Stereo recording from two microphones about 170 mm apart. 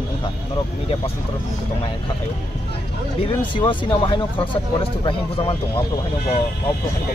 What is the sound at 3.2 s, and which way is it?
Speech, 30° left (ahead or behind).